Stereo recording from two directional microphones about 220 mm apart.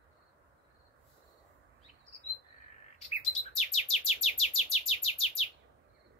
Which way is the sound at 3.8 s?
30° left (ahead or behind).